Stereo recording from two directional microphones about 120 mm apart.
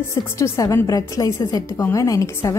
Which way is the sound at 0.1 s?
25° left (ahead or behind).